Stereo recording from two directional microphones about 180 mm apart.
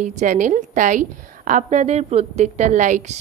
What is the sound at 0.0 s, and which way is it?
A woman's voice, 45° right (ahead or behind).